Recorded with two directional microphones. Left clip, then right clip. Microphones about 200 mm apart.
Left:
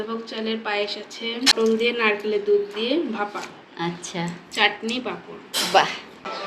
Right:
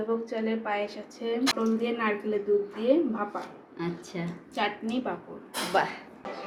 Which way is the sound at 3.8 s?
10° left (ahead or behind).